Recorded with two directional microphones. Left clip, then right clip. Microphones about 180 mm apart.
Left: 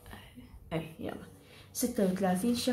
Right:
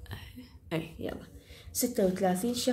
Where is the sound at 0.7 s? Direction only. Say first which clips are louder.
Right 2 dB; 50° right (ahead or behind).